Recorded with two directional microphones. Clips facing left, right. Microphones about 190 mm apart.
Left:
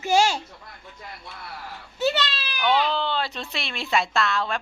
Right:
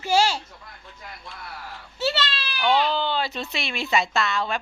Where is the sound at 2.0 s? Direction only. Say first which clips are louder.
Left 2 dB; 15° left (ahead or behind).